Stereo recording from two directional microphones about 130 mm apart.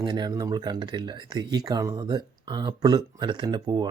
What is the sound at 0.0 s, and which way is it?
Speech, 35° right (ahead or behind).